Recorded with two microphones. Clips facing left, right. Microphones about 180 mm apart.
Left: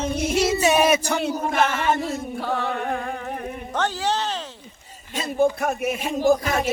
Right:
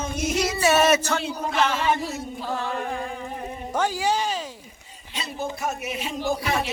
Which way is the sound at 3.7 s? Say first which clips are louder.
Right 1 dB; 10° right (ahead or behind).